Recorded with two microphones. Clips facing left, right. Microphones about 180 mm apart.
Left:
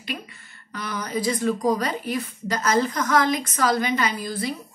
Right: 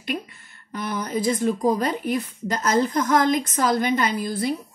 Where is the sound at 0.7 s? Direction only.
50° right (ahead or behind).